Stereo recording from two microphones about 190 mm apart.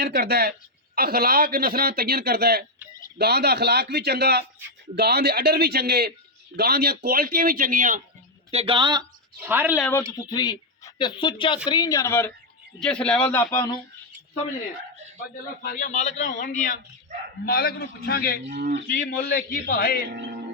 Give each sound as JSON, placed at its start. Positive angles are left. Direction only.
{"t": 0.0, "sound": "a man's voice", "side_deg": -55}
{"t": 8.4, "sound": "speech", "side_deg": -30}
{"t": 9.4, "sound": "speech", "side_deg": -10}
{"t": 10.2, "sound": "a man's voice", "side_deg": 20}
{"t": 15.6, "sound": "a man's voice", "side_deg": 45}
{"t": 17.4, "sound": "a man's voice", "side_deg": 55}
{"t": 20.1, "sound": "speech", "side_deg": -60}